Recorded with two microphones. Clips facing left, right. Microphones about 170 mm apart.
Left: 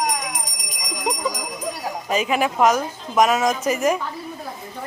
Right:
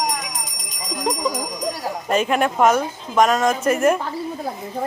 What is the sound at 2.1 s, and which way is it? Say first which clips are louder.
A woman's voice: right 2 dB; 5° left (ahead or behind).